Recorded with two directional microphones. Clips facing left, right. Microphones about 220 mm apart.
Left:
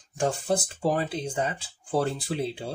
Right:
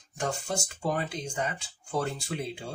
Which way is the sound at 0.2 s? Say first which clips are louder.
Left 6 dB; 35° left (ahead or behind).